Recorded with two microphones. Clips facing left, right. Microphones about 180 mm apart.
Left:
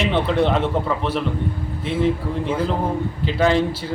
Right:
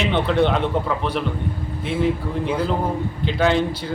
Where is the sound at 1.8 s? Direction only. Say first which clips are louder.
Left 1 dB; centre (ahead or behind).